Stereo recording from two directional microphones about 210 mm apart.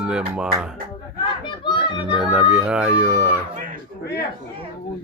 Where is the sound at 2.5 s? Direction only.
5° right (ahead or behind).